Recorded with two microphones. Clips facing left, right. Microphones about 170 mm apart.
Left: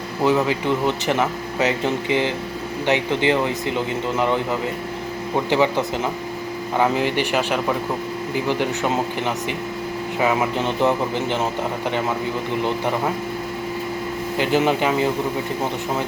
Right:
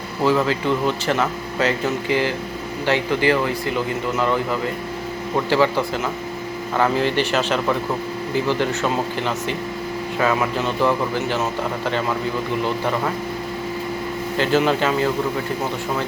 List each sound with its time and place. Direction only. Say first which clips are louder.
0.3 s speech: even; 20° left (ahead or behind)
5.5 s speech: right 1 dB; 20° left (ahead or behind)
14.3 s speech: right 1 dB; 15° left (ahead or behind)